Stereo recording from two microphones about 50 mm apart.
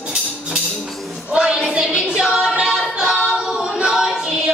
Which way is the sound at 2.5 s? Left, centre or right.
Centre.